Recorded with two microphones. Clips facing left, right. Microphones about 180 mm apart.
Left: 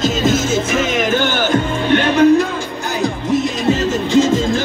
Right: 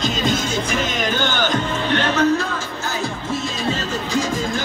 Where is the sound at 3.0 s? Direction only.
20° left (ahead or behind).